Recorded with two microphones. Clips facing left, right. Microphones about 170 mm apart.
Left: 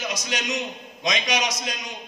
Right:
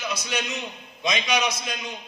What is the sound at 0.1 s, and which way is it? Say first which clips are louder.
A man's voice: left 1 dB; 45° left (ahead or behind).